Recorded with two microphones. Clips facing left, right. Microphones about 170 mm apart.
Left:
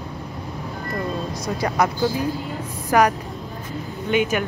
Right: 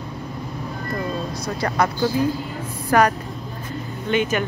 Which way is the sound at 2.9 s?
15° left (ahead or behind).